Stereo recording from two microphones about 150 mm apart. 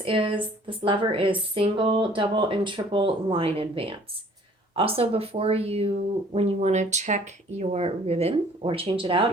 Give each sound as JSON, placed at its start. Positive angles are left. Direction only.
{"t": 0.0, "sound": "a woman's voice", "side_deg": -35}